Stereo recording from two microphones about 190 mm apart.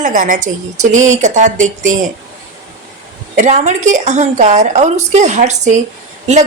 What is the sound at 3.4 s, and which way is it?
Speech, 40° right (ahead or behind).